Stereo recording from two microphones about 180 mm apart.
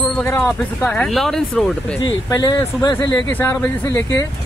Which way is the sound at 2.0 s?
20° left (ahead or behind).